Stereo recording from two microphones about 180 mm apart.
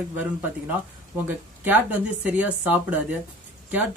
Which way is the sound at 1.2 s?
10° right (ahead or behind).